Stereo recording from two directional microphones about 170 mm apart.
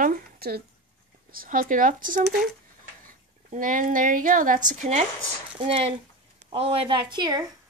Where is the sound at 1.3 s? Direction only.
55° right (ahead or behind); by 7.5 s 25° right (ahead or behind).